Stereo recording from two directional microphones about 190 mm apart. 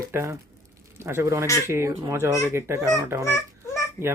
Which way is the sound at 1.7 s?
15° right (ahead or behind).